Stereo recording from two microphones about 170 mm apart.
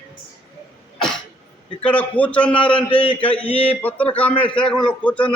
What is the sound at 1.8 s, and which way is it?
Speech, 10° left (ahead or behind).